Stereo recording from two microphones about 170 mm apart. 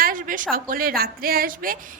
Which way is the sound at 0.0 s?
50° right (ahead or behind).